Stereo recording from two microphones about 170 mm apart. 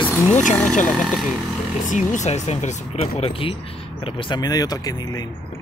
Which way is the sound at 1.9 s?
45° left (ahead or behind).